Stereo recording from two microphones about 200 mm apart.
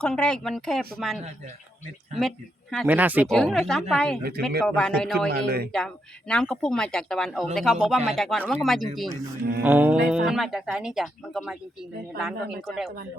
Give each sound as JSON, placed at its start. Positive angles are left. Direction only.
{"t": 0.0, "sound": "speech", "side_deg": 5}
{"t": 3.2, "sound": "speech", "side_deg": 5}
{"t": 5.3, "sound": "speech", "side_deg": -50}
{"t": 5.7, "sound": "speech", "side_deg": 5}
{"t": 9.4, "sound": "speech", "side_deg": -50}
{"t": 9.6, "sound": "speech", "side_deg": -10}
{"t": 12.6, "sound": "speech", "side_deg": 0}